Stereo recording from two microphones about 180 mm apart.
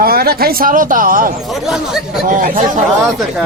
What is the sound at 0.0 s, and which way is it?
Speech, 55° right (ahead or behind).